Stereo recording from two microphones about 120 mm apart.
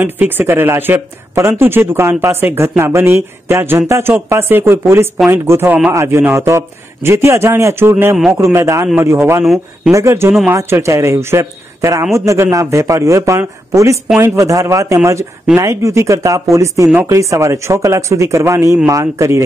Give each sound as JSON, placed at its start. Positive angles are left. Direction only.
{"t": 0.0, "sound": "speech", "side_deg": -15}